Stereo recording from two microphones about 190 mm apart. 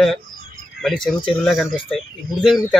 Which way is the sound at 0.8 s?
Centre (ahead or behind).